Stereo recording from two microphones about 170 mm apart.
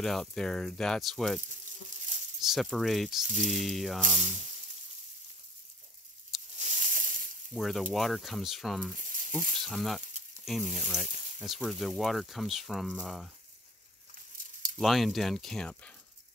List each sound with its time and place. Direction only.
0.0 s speech: centre (ahead or behind)
2.4 s speech: centre (ahead or behind)
4.1 s speech: 45° right (ahead or behind)
6.6 s snake: 45° right (ahead or behind)
7.5 s speech: centre (ahead or behind)
8.9 s snake: 50° right (ahead or behind)
9.7 s speech: centre (ahead or behind)
14.8 s speech: centre (ahead or behind)